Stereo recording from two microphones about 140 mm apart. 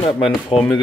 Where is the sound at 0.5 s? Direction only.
45° left (ahead or behind).